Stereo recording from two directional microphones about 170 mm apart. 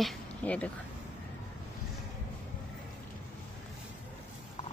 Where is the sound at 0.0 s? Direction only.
10° left (ahead or behind).